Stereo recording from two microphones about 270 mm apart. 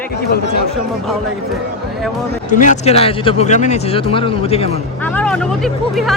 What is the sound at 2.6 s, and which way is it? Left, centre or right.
Speech, left.